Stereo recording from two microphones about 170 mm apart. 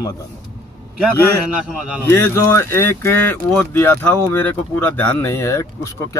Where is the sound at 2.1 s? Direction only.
15° left (ahead or behind).